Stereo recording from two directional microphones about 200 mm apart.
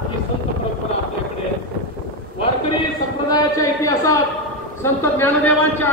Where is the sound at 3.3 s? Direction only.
15° left (ahead or behind).